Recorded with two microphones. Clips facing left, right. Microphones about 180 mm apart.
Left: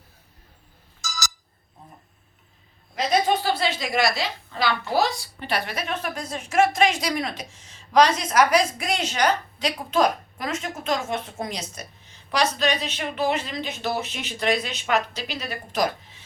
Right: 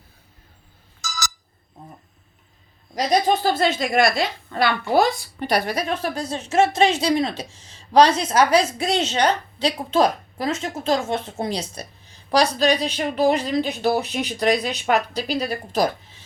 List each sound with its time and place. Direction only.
1.0 s a sound: 55° right (ahead or behind)
2.9 s a woman's voice: 40° right (ahead or behind)
3.6 s a woman's voice: 50° right (ahead or behind); by 15.9 s 35° right (ahead or behind)